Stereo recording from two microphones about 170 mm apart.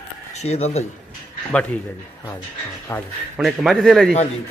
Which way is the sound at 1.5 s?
10° left (ahead or behind).